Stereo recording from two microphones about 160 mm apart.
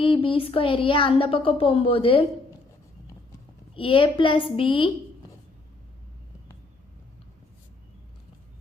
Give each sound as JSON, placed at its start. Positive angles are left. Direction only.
{"t": 0.0, "sound": "speech", "side_deg": 35}
{"t": 3.8, "sound": "speech", "side_deg": 35}